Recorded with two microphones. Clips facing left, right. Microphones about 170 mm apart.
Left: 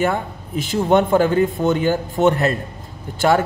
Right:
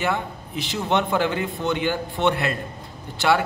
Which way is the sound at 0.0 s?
50° left (ahead or behind).